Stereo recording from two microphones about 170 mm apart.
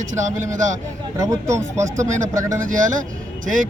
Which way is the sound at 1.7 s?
45° right (ahead or behind).